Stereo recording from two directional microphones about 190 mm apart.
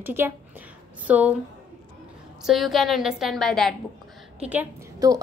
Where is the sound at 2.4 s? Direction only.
Centre (ahead or behind).